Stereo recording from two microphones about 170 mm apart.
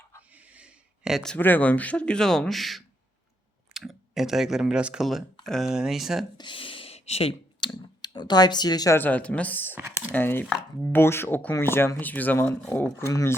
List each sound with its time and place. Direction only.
0.3 s speech: 10° right (ahead or behind)
6.3 s speech: 30° left (ahead or behind); by 9.7 s 10° left (ahead or behind)
9.7 s speech: 10° right (ahead or behind)
10.1 s speech: 10° left (ahead or behind)